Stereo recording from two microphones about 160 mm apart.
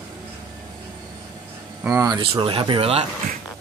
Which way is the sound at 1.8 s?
20° right (ahead or behind).